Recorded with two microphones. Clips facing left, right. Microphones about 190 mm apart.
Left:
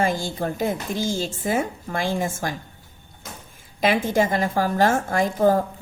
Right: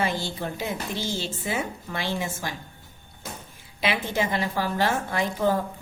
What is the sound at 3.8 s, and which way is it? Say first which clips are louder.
A woman's voice: left 6 dB; 45° left (ahead or behind).